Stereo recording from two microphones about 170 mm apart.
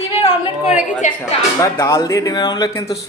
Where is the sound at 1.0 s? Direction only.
45° left (ahead or behind).